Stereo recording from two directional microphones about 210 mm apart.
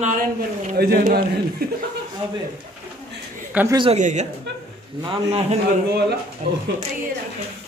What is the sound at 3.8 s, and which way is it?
A man's voice, 35° right (ahead or behind).